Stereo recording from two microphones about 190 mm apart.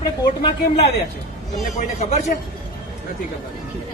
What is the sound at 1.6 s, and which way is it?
Speech, 40° left (ahead or behind).